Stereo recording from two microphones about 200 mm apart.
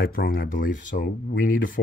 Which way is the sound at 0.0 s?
50° left (ahead or behind).